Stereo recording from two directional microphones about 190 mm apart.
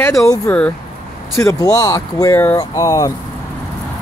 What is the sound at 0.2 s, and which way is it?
Speech, 15° left (ahead or behind).